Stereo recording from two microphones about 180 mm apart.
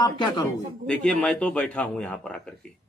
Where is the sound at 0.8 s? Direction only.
5° left (ahead or behind).